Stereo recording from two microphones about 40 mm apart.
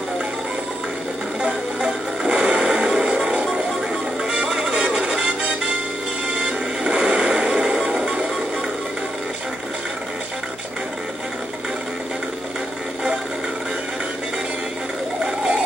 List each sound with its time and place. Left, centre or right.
1.4 s music: centre
4.2 s music: centre
6.8 s vehicle: centre
8.0 s music: right